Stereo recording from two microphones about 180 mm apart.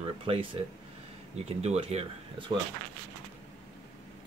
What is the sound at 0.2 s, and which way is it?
Speech, 30° right (ahead or behind).